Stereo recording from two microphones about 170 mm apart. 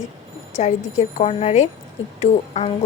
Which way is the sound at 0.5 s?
45° left (ahead or behind).